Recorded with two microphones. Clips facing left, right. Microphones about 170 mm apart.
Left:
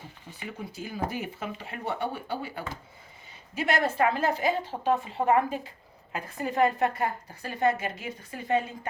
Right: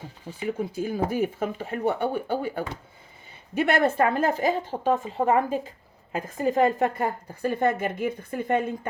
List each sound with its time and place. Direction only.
0.3 s a woman's voice: 40° right (ahead or behind); by 8.6 s 55° right (ahead or behind)